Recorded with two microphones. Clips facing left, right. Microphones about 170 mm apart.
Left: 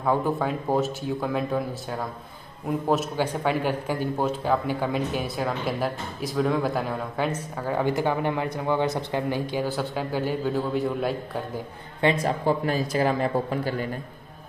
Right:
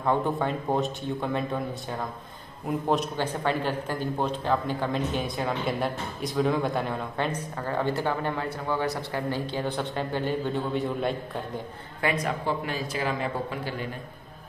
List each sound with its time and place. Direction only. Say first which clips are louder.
0.0 s a man's voice: left 1 dB; 5° left (ahead or behind)
12.0 s speech: left 5 dB; 25° left (ahead or behind)
12.4 s a man's voice: left 5 dB; 40° left (ahead or behind)